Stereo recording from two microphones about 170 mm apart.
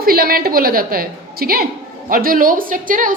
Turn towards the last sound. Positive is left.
turn(degrees=-55)  # may be behind; listen again after turning